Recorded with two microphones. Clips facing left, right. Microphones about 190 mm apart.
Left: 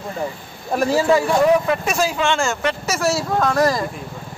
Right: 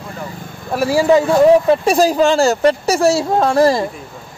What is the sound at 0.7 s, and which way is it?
Speech, 10° right (ahead or behind).